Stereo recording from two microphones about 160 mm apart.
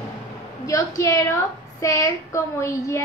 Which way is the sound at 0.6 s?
20° left (ahead or behind).